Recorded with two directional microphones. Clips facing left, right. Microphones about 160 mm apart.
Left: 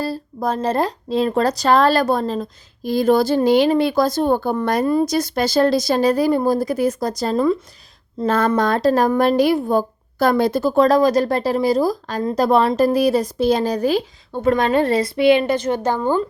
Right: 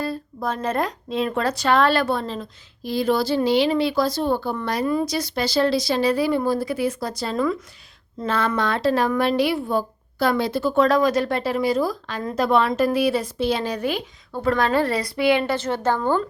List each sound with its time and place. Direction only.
0.0 s a woman's voice: 35° left (ahead or behind)
14.3 s a woman's voice: 20° left (ahead or behind)